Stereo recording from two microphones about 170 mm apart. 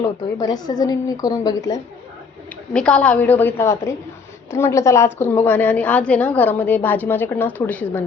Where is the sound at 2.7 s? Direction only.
5° left (ahead or behind).